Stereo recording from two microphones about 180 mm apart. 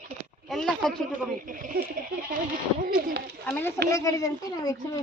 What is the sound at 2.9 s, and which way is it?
Speech, 55° right (ahead or behind).